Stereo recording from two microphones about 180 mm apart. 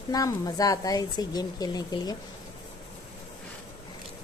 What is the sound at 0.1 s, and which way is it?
Speech, 20° left (ahead or behind).